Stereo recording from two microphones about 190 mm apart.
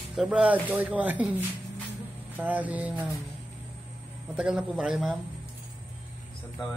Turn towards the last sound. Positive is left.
turn(degrees=0)  # may be behind; listen again after turning